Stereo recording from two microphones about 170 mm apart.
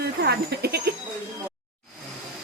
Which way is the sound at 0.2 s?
70° right (ahead or behind).